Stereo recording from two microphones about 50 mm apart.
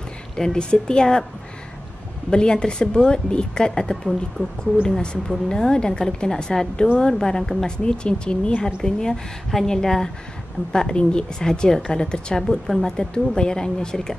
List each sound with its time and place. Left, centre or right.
0.4 s a woman's voice: centre
2.3 s a woman's voice: centre